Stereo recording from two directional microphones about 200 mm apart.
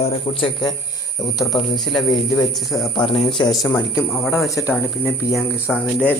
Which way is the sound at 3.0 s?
30° left (ahead or behind).